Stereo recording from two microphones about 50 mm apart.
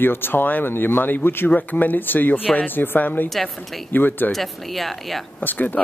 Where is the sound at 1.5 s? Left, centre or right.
Left.